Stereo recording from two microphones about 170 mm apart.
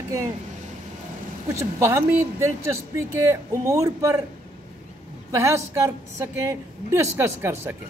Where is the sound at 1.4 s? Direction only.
15° right (ahead or behind).